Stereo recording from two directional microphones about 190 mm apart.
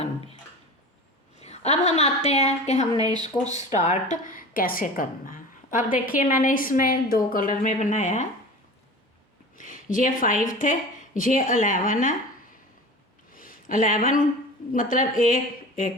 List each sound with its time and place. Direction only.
0.0 s a sound: 30° left (ahead or behind)
1.4 s a woman's voice: 35° left (ahead or behind)
2.9 s speech: 20° right (ahead or behind)
3.8 s a woman's voice: 40° left (ahead or behind)
9.6 s a woman's voice: 45° left (ahead or behind)
13.3 s a sound: 45° left (ahead or behind)
14.7 s a woman's voice: 45° left (ahead or behind)